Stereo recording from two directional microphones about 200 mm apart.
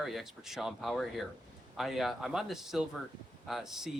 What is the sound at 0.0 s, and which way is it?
Speech, centre (ahead or behind).